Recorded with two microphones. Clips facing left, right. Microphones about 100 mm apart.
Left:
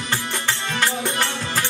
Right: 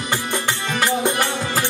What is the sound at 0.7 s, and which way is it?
Music, 15° right (ahead or behind).